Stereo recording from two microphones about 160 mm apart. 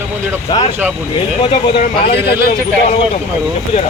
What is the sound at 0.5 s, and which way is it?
Speech, 25° left (ahead or behind).